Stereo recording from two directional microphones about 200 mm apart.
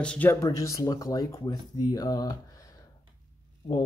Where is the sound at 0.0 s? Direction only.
5° left (ahead or behind).